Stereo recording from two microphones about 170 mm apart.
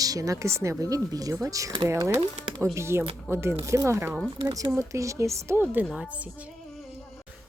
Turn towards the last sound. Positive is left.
turn(degrees=-10)  # may be behind; listen again after turning